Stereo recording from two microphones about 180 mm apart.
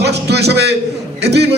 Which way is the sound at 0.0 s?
65° right (ahead or behind).